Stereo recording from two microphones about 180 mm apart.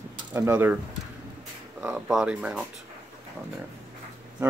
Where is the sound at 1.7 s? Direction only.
5° right (ahead or behind).